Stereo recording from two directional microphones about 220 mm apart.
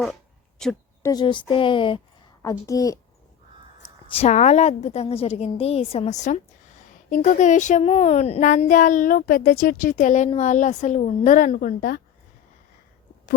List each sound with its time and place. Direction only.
0.6 s a sound: centre (ahead or behind)
1.1 s a woman's voice: 20° left (ahead or behind)
4.1 s a woman's voice: 30° left (ahead or behind)